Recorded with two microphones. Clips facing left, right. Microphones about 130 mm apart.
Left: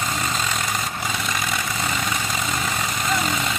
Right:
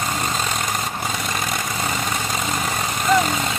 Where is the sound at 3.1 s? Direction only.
45° right (ahead or behind).